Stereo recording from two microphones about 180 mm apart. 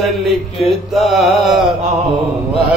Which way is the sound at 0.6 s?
Centre (ahead or behind).